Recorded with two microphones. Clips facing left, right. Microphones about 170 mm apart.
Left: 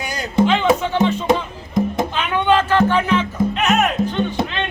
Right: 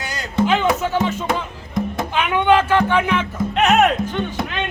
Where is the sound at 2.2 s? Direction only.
10° right (ahead or behind).